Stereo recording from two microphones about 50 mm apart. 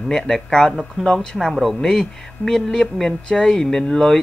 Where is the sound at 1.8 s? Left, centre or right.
Centre.